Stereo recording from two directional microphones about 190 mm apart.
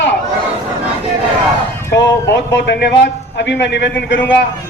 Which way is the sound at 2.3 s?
65° left (ahead or behind).